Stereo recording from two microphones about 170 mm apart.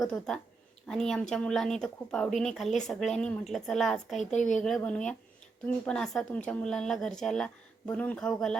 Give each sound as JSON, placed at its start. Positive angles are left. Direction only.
{"t": 0.0, "sound": "speech", "side_deg": 5}
{"t": 4.3, "sound": "a woman's voice", "side_deg": 45}
{"t": 4.6, "sound": "speech", "side_deg": 5}